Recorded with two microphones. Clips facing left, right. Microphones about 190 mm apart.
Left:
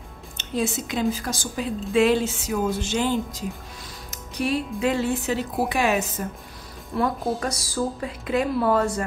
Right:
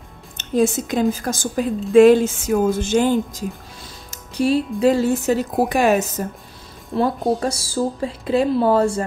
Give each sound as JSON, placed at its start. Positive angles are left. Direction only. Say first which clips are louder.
{"t": 0.4, "sound": "a woman's voice", "louder": "right 8 dB", "side_deg": -45}
{"t": 4.1, "sound": "a woman's voice", "louder": "right 7 dB", "side_deg": -30}
{"t": 6.9, "sound": "a woman's voice", "louder": "right 5 dB", "side_deg": -25}